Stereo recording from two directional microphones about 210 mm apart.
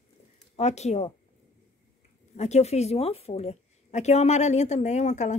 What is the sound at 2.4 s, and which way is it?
A woman's voice, 30° left (ahead or behind).